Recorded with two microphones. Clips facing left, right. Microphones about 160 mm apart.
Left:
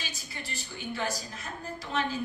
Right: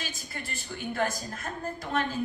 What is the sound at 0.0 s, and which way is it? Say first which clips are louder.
Speech: right 3 dB; 50° right (ahead or behind).